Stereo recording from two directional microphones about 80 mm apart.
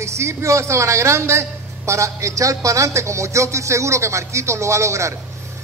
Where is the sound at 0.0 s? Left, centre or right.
Right.